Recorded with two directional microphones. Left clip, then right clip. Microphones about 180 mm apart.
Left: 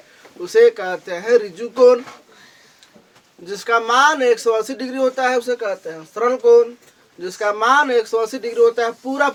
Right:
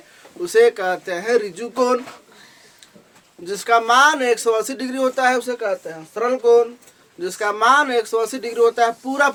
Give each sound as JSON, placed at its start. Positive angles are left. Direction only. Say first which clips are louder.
{"t": 0.4, "sound": "speech", "louder": "left 1 dB", "side_deg": -30}
{"t": 3.4, "sound": "speech", "louder": "right 1 dB", "side_deg": -30}